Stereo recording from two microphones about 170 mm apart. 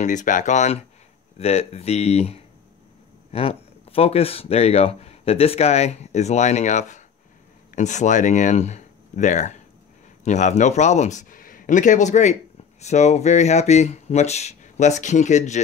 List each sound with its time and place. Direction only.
0.0 s a man's voice: 45° left (ahead or behind)